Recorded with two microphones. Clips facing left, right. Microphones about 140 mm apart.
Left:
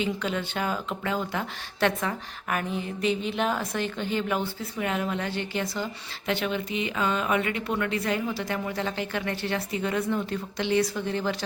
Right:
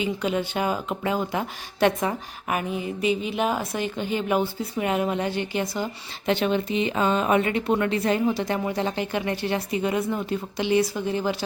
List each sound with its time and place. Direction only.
0.0 s speech: 10° right (ahead or behind)
6.2 s speech: 30° right (ahead or behind); by 11.4 s 10° right (ahead or behind)